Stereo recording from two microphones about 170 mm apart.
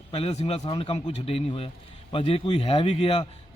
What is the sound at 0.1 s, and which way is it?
A man's voice, 35° left (ahead or behind).